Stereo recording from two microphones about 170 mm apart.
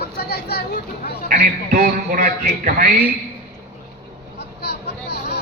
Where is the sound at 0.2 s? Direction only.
70° left (ahead or behind).